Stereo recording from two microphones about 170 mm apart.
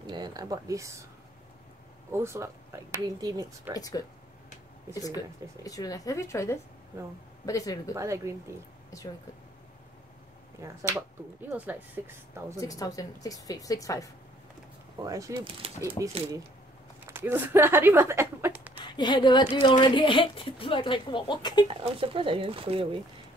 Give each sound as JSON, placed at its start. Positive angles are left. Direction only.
{"t": 0.0, "sound": "speech", "side_deg": -25}
{"t": 2.0, "sound": "speech", "side_deg": -15}
{"t": 3.7, "sound": "speech", "side_deg": 20}
{"t": 5.6, "sound": "speech", "side_deg": 20}
{"t": 7.9, "sound": "speech", "side_deg": -15}
{"t": 8.9, "sound": "speech", "side_deg": 20}
{"t": 10.6, "sound": "speech", "side_deg": -20}
{"t": 12.5, "sound": "speech", "side_deg": 20}
{"t": 15.0, "sound": "speech", "side_deg": -20}
{"t": 17.0, "sound": "speech", "side_deg": -15}
{"t": 18.8, "sound": "speech", "side_deg": 25}
{"t": 21.6, "sound": "speech", "side_deg": -30}